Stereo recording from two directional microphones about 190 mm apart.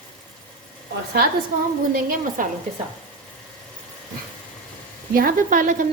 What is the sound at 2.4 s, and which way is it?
Speech, 45° right (ahead or behind).